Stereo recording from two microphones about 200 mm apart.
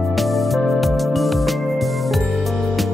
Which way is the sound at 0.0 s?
Centre (ahead or behind).